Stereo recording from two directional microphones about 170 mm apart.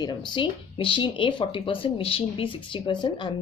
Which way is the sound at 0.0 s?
25° left (ahead or behind).